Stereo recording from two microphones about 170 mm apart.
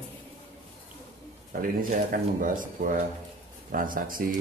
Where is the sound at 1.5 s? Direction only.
55° right (ahead or behind).